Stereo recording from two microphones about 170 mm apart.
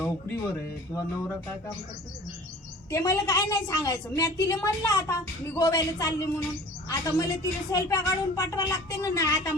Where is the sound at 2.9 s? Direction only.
15° left (ahead or behind).